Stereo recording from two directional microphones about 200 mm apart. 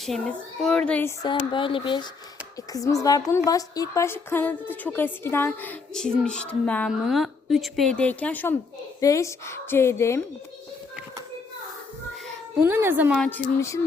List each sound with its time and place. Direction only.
0.0 s speech: centre (ahead or behind)
1.2 s a woman's voice: 25° left (ahead or behind)
12.6 s speech: 10° right (ahead or behind)
13.1 s a woman's voice: 5° left (ahead or behind)